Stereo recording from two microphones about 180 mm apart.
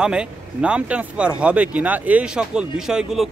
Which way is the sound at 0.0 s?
5° right (ahead or behind).